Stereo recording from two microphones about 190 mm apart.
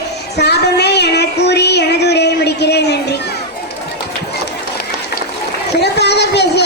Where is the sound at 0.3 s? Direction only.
60° left (ahead or behind).